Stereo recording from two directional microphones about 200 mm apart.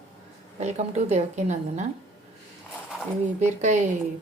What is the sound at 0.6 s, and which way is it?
Speech, 35° right (ahead or behind).